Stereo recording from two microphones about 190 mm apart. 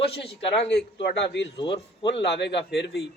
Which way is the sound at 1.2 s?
70° left (ahead or behind).